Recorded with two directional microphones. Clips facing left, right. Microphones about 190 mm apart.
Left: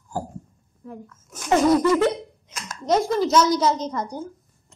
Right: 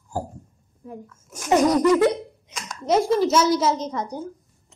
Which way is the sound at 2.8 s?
5° right (ahead or behind).